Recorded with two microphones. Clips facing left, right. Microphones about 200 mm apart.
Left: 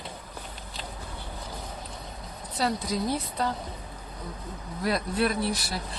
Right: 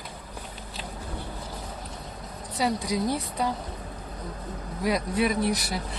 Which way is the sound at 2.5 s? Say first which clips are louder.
Right 2 dB; 15° right (ahead or behind).